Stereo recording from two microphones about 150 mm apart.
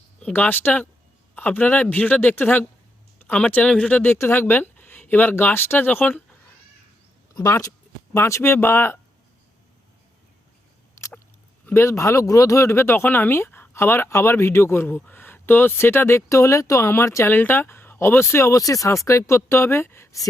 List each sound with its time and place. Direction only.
0.2 s speech: 10° left (ahead or behind)
7.3 s speech: 20° left (ahead or behind)
11.0 s chewing: 20° left (ahead or behind)
11.6 s speech: 15° left (ahead or behind)